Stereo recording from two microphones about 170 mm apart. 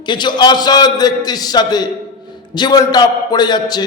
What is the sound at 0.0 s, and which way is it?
A man's voice, 25° left (ahead or behind).